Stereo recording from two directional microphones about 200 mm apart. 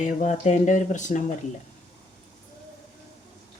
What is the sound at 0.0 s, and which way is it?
Speech, 35° left (ahead or behind).